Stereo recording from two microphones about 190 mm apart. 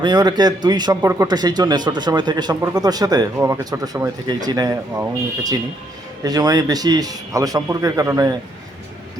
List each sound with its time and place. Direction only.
0.0 s speech: 20° right (ahead or behind)